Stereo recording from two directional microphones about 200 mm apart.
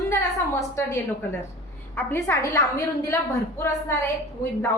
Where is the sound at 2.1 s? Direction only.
15° left (ahead or behind).